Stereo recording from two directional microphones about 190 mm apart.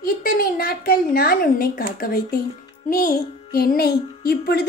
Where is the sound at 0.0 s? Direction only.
50° left (ahead or behind).